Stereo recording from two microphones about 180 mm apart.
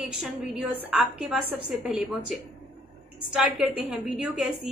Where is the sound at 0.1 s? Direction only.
5° right (ahead or behind).